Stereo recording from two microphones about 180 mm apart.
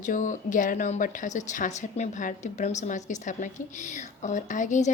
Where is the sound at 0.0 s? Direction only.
45° left (ahead or behind).